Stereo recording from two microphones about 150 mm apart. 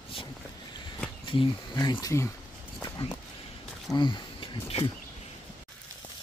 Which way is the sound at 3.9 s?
30° left (ahead or behind).